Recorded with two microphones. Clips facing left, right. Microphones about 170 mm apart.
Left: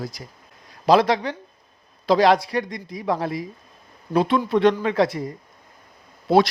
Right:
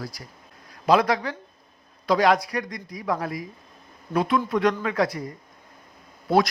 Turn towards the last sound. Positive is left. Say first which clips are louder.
# left 4 dB
turn(degrees=25)  # may be behind; listen again after turning